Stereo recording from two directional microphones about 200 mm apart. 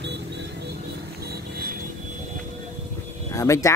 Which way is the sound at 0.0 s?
60° right (ahead or behind).